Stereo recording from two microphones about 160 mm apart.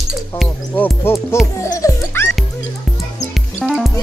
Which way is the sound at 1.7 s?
20° left (ahead or behind).